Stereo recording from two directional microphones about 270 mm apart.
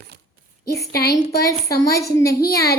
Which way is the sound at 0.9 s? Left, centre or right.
Left.